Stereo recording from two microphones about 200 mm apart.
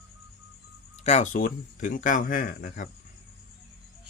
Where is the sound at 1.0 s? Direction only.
35° left (ahead or behind).